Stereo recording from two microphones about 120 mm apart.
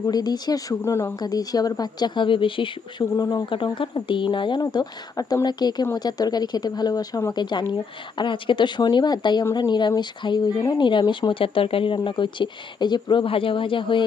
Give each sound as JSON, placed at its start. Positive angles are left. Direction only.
{"t": 0.0, "sound": "speech", "side_deg": 35}
{"t": 1.2, "sound": "speech", "side_deg": 30}
{"t": 7.5, "sound": "speech", "side_deg": 40}